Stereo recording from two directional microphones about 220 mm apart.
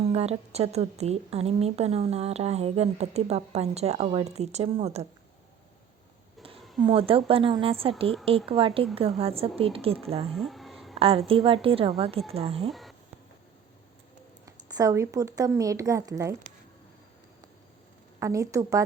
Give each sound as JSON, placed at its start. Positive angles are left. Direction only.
{"t": 0.0, "sound": "a woman's voice", "side_deg": -30}
{"t": 6.8, "sound": "a woman's voice", "side_deg": -25}
{"t": 10.3, "sound": "a sound", "side_deg": 0}
{"t": 10.9, "sound": "a woman's voice", "side_deg": -25}
{"t": 14.4, "sound": "speech", "side_deg": -15}
{"t": 18.2, "sound": "a woman's voice", "side_deg": -15}